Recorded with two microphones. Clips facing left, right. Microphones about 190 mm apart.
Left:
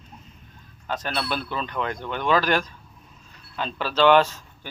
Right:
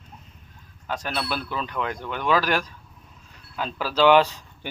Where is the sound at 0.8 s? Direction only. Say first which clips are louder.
Left 1 dB; 10° right (ahead or behind).